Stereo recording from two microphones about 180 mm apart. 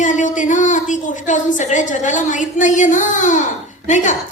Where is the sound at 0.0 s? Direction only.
45° left (ahead or behind).